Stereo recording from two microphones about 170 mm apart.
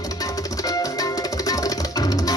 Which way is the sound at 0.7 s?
20° left (ahead or behind).